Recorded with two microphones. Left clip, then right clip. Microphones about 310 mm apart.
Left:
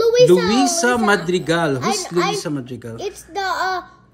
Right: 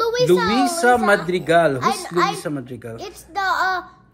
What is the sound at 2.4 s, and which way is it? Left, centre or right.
Speech, centre.